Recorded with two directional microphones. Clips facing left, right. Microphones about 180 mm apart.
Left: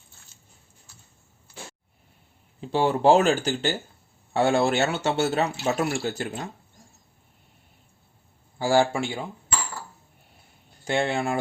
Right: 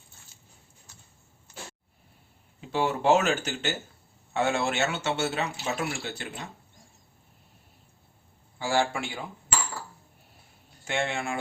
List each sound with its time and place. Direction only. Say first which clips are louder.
2.6 s speech: left 5 dB; 30° left (ahead or behind)
8.5 s speech: left 6 dB; 40° left (ahead or behind)
10.8 s speech: left 5 dB; 35° left (ahead or behind)